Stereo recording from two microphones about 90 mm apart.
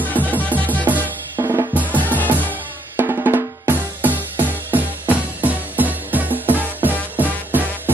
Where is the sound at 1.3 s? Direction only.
40° right (ahead or behind).